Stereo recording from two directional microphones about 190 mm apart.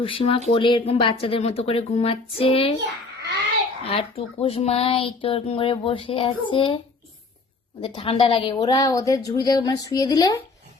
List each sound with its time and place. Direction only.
0.0 s speech: 30° left (ahead or behind)
3.8 s speech: 30° left (ahead or behind)
7.8 s speech: 25° left (ahead or behind)